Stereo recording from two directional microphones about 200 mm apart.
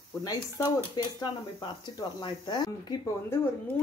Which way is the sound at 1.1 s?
20° left (ahead or behind).